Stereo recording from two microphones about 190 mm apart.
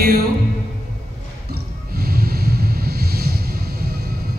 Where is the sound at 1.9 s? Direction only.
50° right (ahead or behind).